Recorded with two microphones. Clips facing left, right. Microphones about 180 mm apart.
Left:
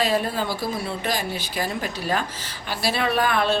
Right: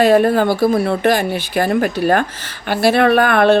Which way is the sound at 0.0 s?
60° right (ahead or behind).